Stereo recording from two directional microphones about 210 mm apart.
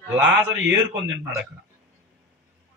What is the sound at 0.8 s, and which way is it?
Speech, 60° right (ahead or behind).